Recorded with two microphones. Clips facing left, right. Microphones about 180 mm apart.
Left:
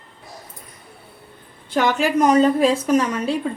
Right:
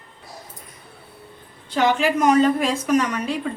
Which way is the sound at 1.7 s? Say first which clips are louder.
Even; 45° left (ahead or behind).